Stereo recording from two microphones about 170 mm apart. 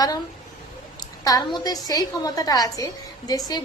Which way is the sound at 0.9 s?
20° left (ahead or behind).